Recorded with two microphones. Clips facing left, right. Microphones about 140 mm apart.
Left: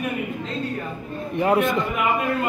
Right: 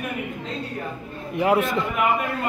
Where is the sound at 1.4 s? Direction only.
5° right (ahead or behind).